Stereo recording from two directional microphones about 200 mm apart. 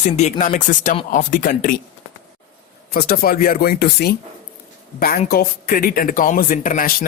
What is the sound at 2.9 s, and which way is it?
Speech, 50° left (ahead or behind).